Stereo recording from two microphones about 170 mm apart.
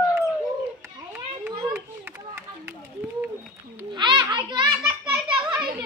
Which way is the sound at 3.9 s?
25° right (ahead or behind).